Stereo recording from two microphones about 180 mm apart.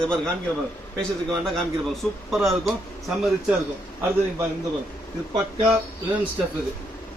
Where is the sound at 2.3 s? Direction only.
Centre (ahead or behind).